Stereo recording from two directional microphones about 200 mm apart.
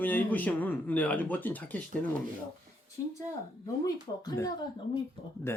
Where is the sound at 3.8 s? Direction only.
15° left (ahead or behind).